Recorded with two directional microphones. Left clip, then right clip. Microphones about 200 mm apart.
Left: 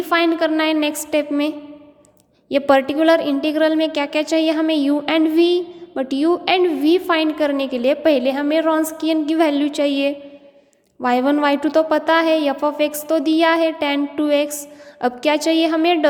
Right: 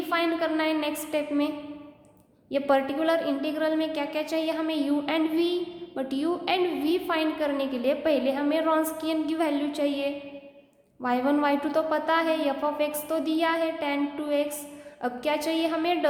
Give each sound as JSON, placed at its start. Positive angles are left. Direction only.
{"t": 0.1, "sound": "a woman's voice", "side_deg": 40}